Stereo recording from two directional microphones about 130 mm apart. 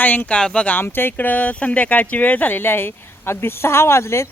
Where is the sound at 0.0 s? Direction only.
15° left (ahead or behind).